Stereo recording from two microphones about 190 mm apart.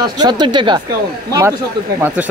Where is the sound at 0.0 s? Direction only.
25° right (ahead or behind).